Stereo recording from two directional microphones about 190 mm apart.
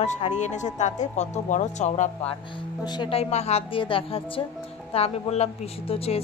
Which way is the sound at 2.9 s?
25° left (ahead or behind).